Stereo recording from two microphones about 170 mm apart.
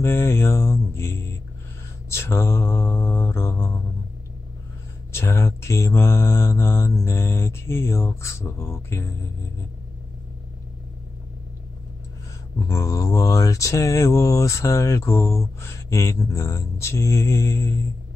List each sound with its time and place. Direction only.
0.0 s mantra: 15° left (ahead or behind)
5.1 s mantra: 15° left (ahead or behind)
12.5 s mantra: 20° left (ahead or behind)